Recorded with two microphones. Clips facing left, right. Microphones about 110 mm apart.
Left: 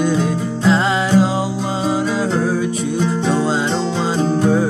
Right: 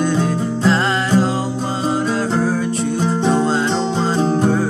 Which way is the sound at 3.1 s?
30° right (ahead or behind).